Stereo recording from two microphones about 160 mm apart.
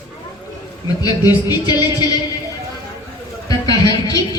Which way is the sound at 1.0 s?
25° left (ahead or behind).